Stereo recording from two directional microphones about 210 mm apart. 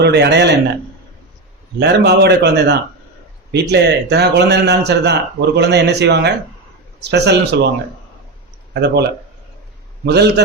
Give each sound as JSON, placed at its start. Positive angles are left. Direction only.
{"t": 0.0, "sound": "a man's voice", "side_deg": -50}
{"t": 1.8, "sound": "a man's voice", "side_deg": -55}
{"t": 8.7, "sound": "speech", "side_deg": -50}
{"t": 10.1, "sound": "a man's voice", "side_deg": -50}